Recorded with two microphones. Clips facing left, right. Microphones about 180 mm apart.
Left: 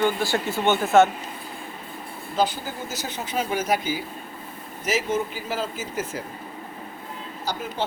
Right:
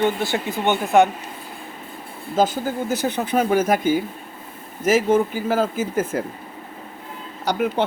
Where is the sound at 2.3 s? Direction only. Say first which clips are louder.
Right 5 dB; 45° right (ahead or behind).